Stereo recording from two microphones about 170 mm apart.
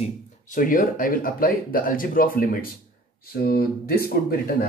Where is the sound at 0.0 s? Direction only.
50° left (ahead or behind).